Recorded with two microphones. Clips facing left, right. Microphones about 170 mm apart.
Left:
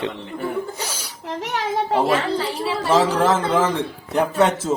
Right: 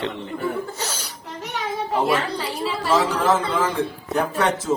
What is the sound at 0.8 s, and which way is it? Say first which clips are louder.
Laughter: even; 10° left (ahead or behind).